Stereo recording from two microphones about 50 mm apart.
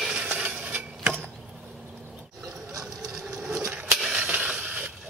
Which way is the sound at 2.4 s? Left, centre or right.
Centre.